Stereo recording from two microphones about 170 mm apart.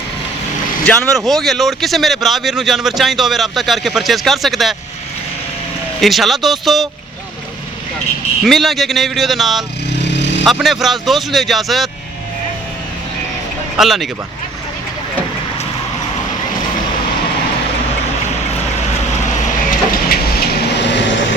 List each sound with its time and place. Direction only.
0.9 s speech: centre (ahead or behind)
6.0 s speech: centre (ahead or behind)
8.4 s speech: centre (ahead or behind)
13.7 s speech: centre (ahead or behind)
20.1 s a sound: 75° left (ahead or behind)